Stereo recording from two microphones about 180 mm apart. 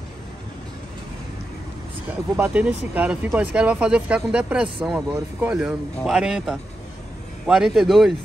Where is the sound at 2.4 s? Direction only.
10° right (ahead or behind).